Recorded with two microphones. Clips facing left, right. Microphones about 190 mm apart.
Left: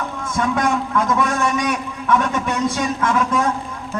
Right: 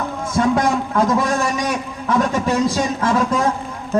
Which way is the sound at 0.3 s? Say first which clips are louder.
Right 3 dB; 30° right (ahead or behind).